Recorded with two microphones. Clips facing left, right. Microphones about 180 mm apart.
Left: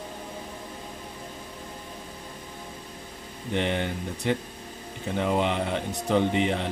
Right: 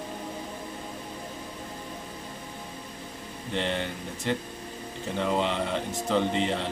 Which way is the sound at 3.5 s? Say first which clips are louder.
Left 3 dB; 15° left (ahead or behind).